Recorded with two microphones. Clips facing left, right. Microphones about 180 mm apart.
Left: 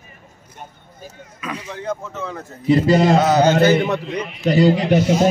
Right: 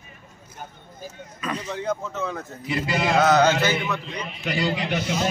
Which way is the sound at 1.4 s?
10° left (ahead or behind).